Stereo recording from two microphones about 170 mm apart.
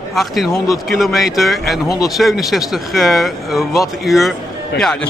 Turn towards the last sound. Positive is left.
turn(degrees=5)  # may be behind; listen again after turning